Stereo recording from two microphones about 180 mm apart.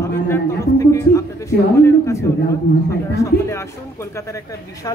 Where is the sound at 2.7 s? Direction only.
70° left (ahead or behind).